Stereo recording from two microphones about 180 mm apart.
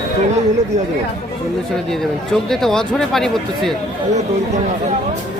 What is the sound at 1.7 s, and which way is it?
Speech, centre (ahead or behind).